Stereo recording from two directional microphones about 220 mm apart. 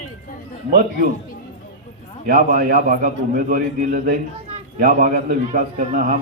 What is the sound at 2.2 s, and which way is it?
Speech, 40° right (ahead or behind).